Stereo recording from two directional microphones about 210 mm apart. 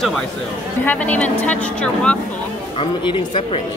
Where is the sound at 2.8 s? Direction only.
25° left (ahead or behind).